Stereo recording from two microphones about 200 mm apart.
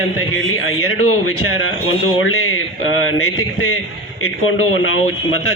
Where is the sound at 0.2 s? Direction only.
85° left.